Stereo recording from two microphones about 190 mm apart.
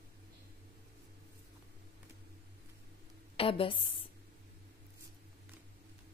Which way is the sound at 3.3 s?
30° left (ahead or behind).